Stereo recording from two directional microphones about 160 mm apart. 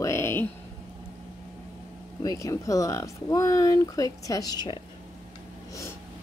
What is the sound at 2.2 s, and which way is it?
Speech, 20° left (ahead or behind).